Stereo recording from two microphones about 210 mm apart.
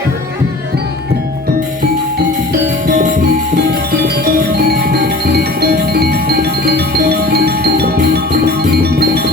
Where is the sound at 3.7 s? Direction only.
50° right (ahead or behind).